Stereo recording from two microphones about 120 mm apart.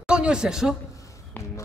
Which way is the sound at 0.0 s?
5° right (ahead or behind).